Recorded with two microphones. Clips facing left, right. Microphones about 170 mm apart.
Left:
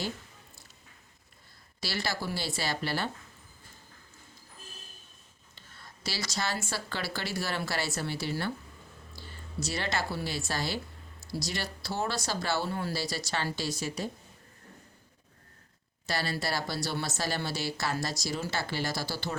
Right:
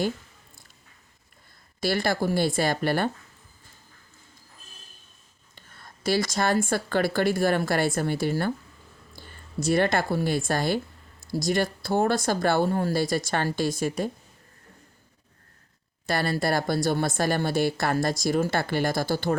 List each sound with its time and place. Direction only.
1.8 s a woman's voice: 50° right (ahead or behind)
5.5 s a woman's voice: 50° right (ahead or behind)
16.0 s a woman's voice: 50° right (ahead or behind)